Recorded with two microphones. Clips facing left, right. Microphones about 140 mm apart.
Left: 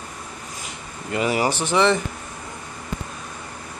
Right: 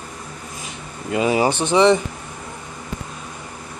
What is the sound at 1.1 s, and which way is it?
Speech, 20° right (ahead or behind).